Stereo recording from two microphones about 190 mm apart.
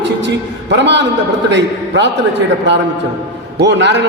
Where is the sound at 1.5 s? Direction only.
70° right (ahead or behind).